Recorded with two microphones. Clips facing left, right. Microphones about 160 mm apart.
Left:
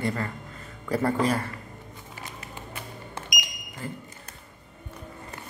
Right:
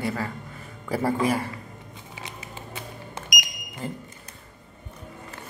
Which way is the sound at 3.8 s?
20° right (ahead or behind).